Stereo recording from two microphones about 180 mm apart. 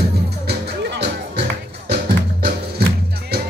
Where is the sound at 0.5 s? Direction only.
70° right (ahead or behind).